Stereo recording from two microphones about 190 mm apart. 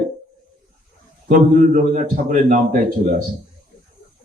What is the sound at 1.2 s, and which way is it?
A man's voice, 40° right (ahead or behind).